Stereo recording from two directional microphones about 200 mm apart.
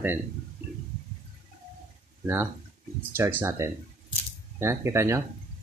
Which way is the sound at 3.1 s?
15° right (ahead or behind).